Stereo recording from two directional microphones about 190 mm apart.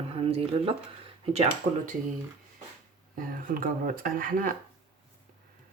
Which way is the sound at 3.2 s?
45° right (ahead or behind).